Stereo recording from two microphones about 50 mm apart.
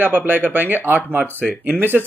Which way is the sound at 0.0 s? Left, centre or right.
Right.